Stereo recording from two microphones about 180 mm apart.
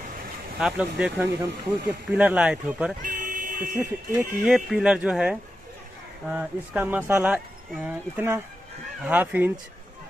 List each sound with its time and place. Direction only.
0.6 s speech: 5° right (ahead or behind)
3.0 s a sound: 50° right (ahead or behind)
3.7 s speech: 15° right (ahead or behind)
4.5 s speech: centre (ahead or behind)